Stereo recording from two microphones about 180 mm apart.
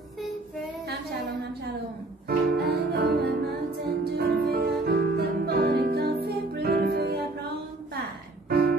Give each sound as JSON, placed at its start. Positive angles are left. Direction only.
{"t": 2.2, "sound": "music", "side_deg": -60}
{"t": 8.5, "sound": "music", "side_deg": -60}